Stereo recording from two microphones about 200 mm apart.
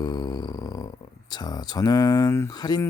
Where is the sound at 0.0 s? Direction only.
20° left (ahead or behind).